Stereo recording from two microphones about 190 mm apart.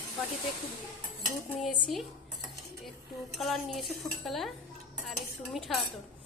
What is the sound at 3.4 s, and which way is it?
A woman's voice, centre (ahead or behind).